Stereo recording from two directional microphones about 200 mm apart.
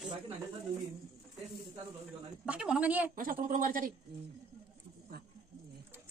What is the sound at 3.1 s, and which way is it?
Speech, 45° right (ahead or behind).